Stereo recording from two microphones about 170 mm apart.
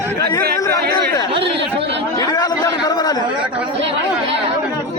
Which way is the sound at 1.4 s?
90° right.